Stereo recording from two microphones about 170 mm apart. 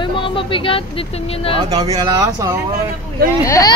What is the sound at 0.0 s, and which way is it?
Speech, 30° left (ahead or behind).